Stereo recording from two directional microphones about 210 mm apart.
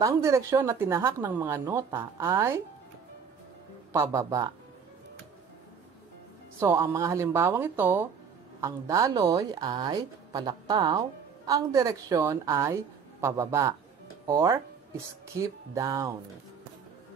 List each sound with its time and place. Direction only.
0.0 s a woman's voice: 15° right (ahead or behind)
3.9 s a woman's voice: 15° right (ahead or behind)
6.6 s a woman's voice: 15° right (ahead or behind)